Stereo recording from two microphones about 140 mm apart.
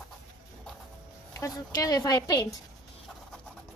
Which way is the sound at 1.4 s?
25° left (ahead or behind).